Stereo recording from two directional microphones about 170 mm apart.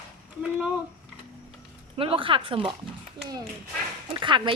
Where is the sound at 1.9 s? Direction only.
35° right (ahead or behind).